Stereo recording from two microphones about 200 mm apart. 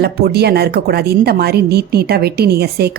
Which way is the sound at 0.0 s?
50° right (ahead or behind).